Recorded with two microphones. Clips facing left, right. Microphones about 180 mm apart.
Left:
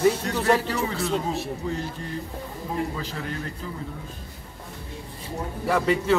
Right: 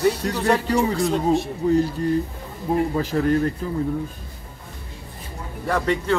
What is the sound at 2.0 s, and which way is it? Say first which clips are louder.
A man's voice: right 10 dB; 40° right (ahead or behind).